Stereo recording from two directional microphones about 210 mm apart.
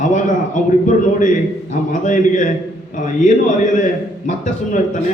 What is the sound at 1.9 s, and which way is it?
Speech, 35° left (ahead or behind).